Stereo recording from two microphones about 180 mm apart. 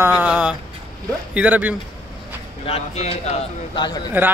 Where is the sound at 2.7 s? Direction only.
35° left (ahead or behind).